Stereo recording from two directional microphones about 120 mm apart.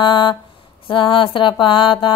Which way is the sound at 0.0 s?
40° left (ahead or behind).